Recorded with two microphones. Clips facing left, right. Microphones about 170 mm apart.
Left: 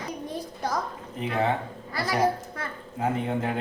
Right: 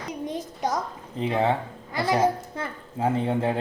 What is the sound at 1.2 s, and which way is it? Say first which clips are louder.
A child's voice: right 3 dB; 30° right (ahead or behind).